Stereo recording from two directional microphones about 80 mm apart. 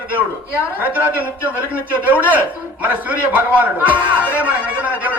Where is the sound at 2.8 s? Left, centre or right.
Centre.